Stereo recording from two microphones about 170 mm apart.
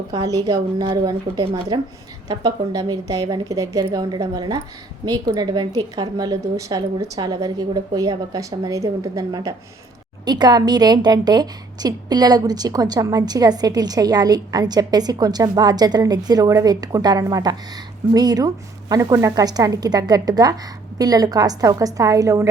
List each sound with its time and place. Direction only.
0.1 s a woman's voice: 20° right (ahead or behind)